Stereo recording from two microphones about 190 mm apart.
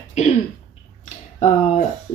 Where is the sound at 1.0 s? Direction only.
35° left (ahead or behind).